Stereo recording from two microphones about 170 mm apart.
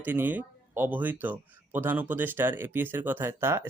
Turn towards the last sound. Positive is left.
turn(degrees=-15)  # may be behind; listen again after turning